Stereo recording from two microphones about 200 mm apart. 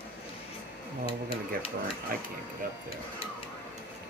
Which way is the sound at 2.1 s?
45° right (ahead or behind).